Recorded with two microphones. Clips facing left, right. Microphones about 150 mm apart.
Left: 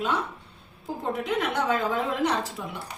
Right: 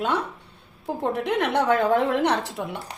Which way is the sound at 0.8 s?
65° right (ahead or behind).